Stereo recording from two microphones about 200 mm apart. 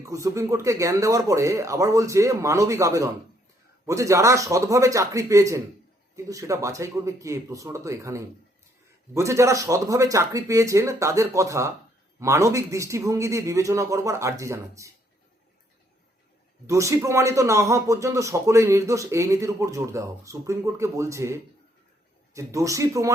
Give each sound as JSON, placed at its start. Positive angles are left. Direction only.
{"t": 0.0, "sound": "speech", "side_deg": -15}
{"t": 16.6, "sound": "speech", "side_deg": -15}